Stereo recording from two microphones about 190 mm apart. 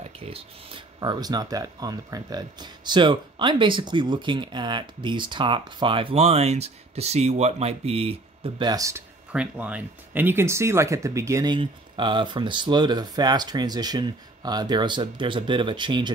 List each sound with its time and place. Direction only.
0.2 s speech: 30° right (ahead or behind)
9.3 s speech: 5° right (ahead or behind); by 16.1 s 25° right (ahead or behind)